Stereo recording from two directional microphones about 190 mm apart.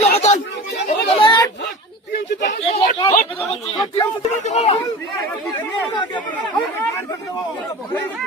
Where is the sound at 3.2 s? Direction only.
35° left (ahead or behind).